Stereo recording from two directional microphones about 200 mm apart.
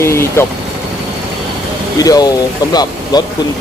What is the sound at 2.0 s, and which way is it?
Speech, 20° left (ahead or behind).